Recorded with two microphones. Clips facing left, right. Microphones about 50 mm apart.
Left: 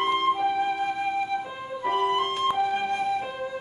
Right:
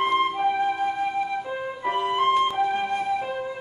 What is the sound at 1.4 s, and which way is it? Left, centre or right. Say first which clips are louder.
Music: right 1 dB; centre.